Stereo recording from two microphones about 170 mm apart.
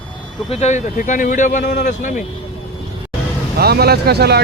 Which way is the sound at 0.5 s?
40° left (ahead or behind).